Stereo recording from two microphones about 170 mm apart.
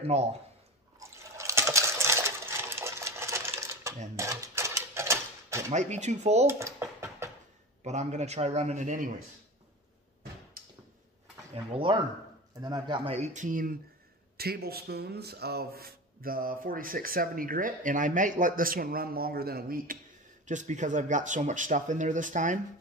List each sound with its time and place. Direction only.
0.0 s a man's voice: 40° right (ahead or behind)
0.9 s liquid: 15° right (ahead or behind)
4.2 s a sound: 15° right (ahead or behind)
5.7 s speech: 45° right (ahead or behind)
6.4 s a sound: 15° right (ahead or behind)
7.8 s a man's voice: 40° right (ahead or behind)
10.6 s a sound: 60° right (ahead or behind)
11.5 s a man's voice: 30° right (ahead or behind); by 13.7 s 55° right (ahead or behind)
14.3 s speech: 65° right (ahead or behind)
20.4 s speech: 45° right (ahead or behind)